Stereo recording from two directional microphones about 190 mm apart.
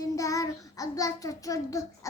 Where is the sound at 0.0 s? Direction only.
15° left (ahead or behind).